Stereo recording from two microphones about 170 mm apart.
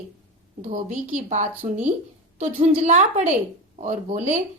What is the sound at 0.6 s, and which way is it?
Speech, 45° right (ahead or behind).